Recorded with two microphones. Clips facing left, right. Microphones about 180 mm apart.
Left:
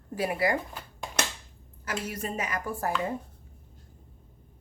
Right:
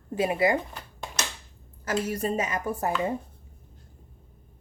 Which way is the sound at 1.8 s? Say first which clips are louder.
Right 6 dB; 40° right (ahead or behind).